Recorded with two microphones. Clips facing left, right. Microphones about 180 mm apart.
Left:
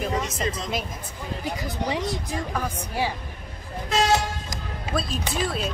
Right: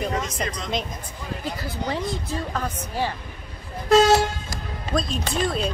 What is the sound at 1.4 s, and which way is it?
A woman's voice, 15° left (ahead or behind).